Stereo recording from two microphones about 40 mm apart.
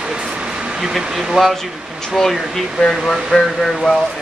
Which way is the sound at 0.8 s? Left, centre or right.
Centre.